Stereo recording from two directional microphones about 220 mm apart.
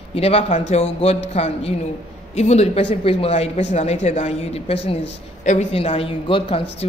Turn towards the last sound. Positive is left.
turn(degrees=25)  # may be behind; listen again after turning